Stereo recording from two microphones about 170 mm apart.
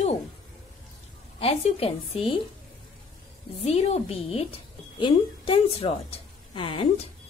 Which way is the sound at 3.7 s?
40° left (ahead or behind).